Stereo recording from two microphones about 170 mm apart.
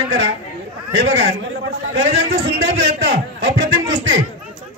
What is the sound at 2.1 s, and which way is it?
Speech, 90° right.